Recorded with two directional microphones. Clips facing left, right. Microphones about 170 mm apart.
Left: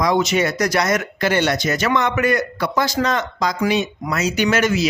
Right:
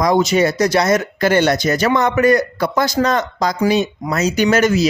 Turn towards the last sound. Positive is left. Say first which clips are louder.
# right 4 dB
turn(degrees=-40)  # may be behind; listen again after turning